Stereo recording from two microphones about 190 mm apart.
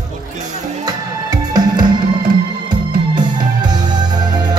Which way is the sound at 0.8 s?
20° right (ahead or behind).